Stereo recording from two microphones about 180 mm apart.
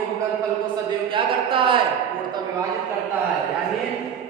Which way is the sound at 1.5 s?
30° right (ahead or behind).